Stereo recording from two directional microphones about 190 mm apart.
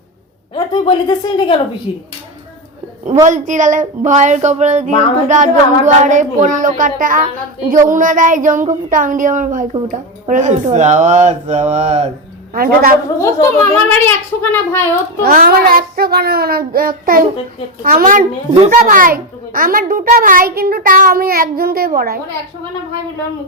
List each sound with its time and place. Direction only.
0.5 s speech: 25° left (ahead or behind)
3.2 s a child's voice: 40° right (ahead or behind)
12.5 s a child's voice: 50° right (ahead or behind)
13.1 s a child's voice: 15° left (ahead or behind)
15.2 s a child's voice: 50° right (ahead or behind)